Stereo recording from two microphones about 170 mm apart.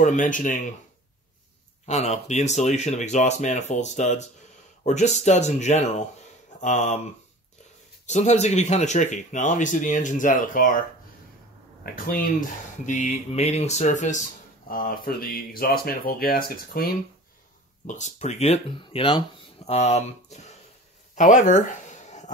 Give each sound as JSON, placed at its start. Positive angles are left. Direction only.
{"t": 0.0, "sound": "speech", "side_deg": 50}
{"t": 1.9, "sound": "speech", "side_deg": 40}
{"t": 8.1, "sound": "speech", "side_deg": 40}
{"t": 11.8, "sound": "speech", "side_deg": 60}
{"t": 14.7, "sound": "speech", "side_deg": 60}
{"t": 17.8, "sound": "speech", "side_deg": 45}
{"t": 21.1, "sound": "a sound", "side_deg": 45}